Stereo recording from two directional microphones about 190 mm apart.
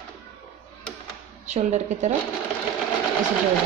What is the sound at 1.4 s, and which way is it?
Speech, 35° right (ahead or behind).